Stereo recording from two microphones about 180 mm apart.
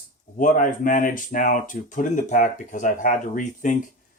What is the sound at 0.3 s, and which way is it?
Speech, 45° left (ahead or behind).